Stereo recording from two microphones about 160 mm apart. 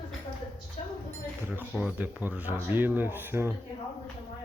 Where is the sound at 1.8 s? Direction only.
10° right (ahead or behind).